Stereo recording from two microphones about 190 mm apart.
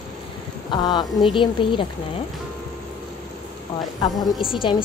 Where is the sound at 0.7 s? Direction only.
20° left (ahead or behind).